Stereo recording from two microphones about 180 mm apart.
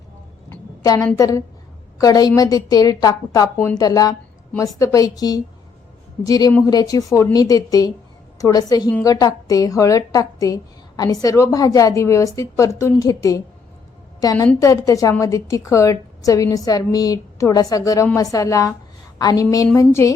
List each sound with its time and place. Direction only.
0.5 s a woman's voice: 15° left (ahead or behind)